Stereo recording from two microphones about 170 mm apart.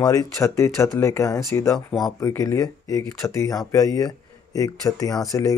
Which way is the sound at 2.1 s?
15° left (ahead or behind).